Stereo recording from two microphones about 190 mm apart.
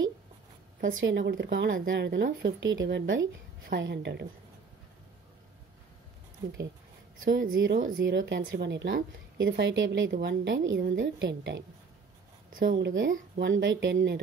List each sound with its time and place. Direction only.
0.9 s speech: 80° right
3.6 s a woman's voice: 65° right (ahead or behind)
7.2 s a woman's voice: 45° right (ahead or behind)
8.0 s speech: 75° right (ahead or behind)
8.4 s speech: 55° right (ahead or behind); by 10.8 s 80° right
10.8 s a woman's voice: 60° right (ahead or behind)
12.4 s a sound: 45° right (ahead or behind)
12.7 s speech: 70° right (ahead or behind)